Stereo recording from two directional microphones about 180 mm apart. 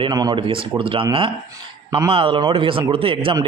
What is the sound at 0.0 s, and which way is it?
A man's voice, 20° right (ahead or behind).